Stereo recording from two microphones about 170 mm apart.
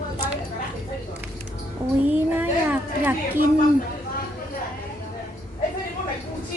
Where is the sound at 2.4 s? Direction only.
10° right (ahead or behind).